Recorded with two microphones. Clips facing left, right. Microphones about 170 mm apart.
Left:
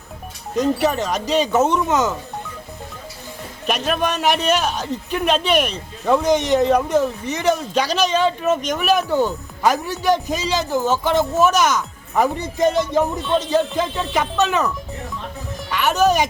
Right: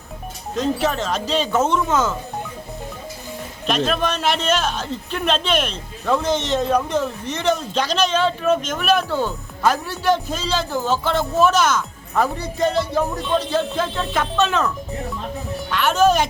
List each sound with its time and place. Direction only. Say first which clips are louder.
0.5 s a man's voice: left 3 dB; 15° left (ahead or behind)
3.7 s a man's voice: even; 10° left (ahead or behind)
15.7 s music: even; 15° left (ahead or behind)